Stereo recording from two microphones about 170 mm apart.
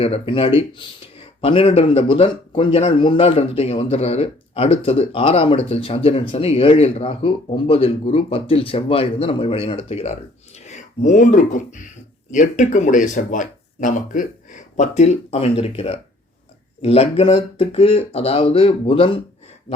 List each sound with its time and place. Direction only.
0.0 s speech: 35° left (ahead or behind)